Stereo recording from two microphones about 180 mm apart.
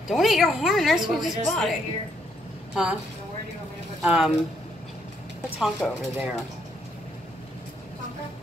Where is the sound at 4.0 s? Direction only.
Centre (ahead or behind).